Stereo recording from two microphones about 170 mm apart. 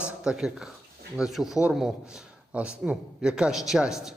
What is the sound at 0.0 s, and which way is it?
A man's voice, 5° right (ahead or behind).